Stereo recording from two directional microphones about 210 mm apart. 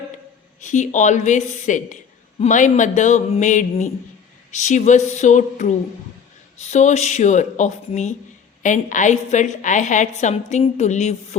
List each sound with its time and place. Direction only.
0.6 s a woman's voice: 35° left (ahead or behind)